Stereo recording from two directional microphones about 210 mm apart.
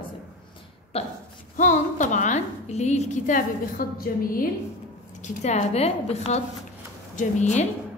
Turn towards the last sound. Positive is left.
turn(degrees=35)  # may be behind; listen again after turning